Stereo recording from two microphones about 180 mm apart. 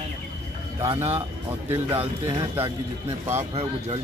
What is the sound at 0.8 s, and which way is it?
Speech, 10° right (ahead or behind).